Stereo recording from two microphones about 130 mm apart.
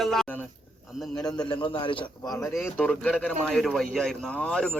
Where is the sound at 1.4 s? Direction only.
35° left (ahead or behind).